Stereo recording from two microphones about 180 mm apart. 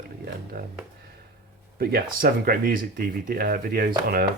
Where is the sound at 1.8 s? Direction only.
60° right (ahead or behind).